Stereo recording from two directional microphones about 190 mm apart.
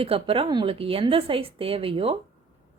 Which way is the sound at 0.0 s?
30° right (ahead or behind).